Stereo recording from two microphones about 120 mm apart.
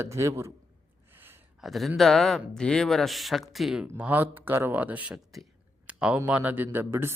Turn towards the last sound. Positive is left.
turn(degrees=-20)  # may be behind; listen again after turning